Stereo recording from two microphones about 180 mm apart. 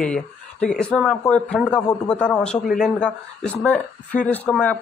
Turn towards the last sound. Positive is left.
turn(degrees=5)  # may be behind; listen again after turning